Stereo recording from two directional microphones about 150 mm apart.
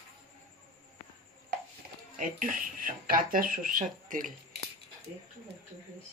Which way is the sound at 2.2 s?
65° right (ahead or behind).